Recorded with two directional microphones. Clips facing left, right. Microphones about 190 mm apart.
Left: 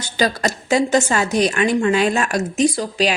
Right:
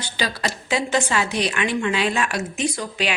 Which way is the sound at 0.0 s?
45° left (ahead or behind).